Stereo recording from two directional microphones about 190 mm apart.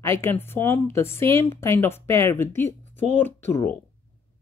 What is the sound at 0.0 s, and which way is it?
Speech, 15° left (ahead or behind).